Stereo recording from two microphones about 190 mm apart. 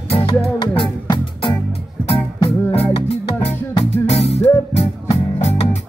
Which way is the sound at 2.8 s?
30° left (ahead or behind).